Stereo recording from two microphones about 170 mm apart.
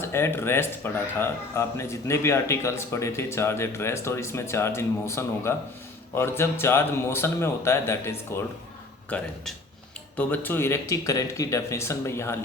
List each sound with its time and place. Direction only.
0.0 s speech: 15° left (ahead or behind)